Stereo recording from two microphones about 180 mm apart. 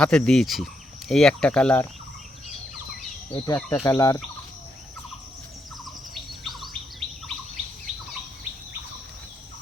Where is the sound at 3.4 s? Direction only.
20° left (ahead or behind).